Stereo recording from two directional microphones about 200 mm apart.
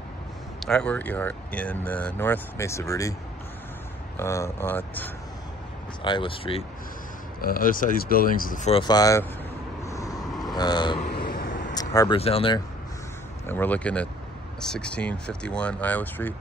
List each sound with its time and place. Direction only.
0.6 s speech: 5° left (ahead or behind)
4.2 s speech: 15° left (ahead or behind)
6.0 s speech: 25° left (ahead or behind)
7.4 s speech: 45° left (ahead or behind)
8.8 s speech: 20° left (ahead or behind)
9.8 s vehicle: 15° left (ahead or behind)
10.4 s speech: 20° left (ahead or behind)
11.1 s vehicle: 50° left (ahead or behind)
11.7 s vehicle: 20° left (ahead or behind)
12.2 s speech: 30° left (ahead or behind)
13.5 s speech: 10° left (ahead or behind)